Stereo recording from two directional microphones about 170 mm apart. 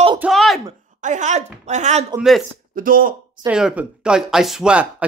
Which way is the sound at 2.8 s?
55° right (ahead or behind).